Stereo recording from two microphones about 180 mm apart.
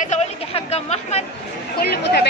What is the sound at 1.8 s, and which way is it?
Speech, 60° left (ahead or behind).